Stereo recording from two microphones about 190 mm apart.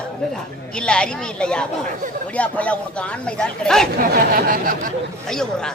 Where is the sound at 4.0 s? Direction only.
50° right (ahead or behind).